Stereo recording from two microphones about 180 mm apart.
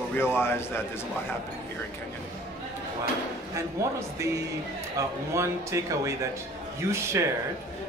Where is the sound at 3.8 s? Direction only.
15° right (ahead or behind).